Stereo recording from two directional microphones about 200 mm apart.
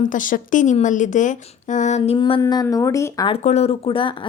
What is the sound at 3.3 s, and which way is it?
Speech, 35° left (ahead or behind).